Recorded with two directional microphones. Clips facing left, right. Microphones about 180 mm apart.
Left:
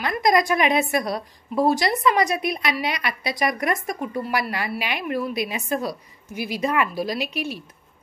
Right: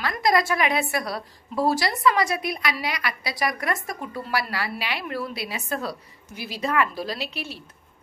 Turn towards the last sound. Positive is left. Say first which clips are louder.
# left 6 dB
turn(degrees=15)  # may be behind; listen again after turning